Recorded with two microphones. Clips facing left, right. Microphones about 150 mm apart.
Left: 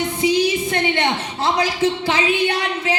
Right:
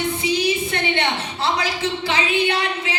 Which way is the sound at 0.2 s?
45° left (ahead or behind).